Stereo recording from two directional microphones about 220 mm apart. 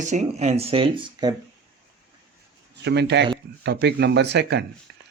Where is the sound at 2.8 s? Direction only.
50° right (ahead or behind).